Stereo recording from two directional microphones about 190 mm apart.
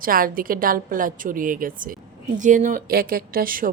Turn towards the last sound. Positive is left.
turn(degrees=-50)  # may be behind; listen again after turning